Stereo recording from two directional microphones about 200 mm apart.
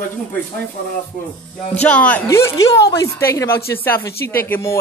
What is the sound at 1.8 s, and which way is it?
Speech, 5° left (ahead or behind).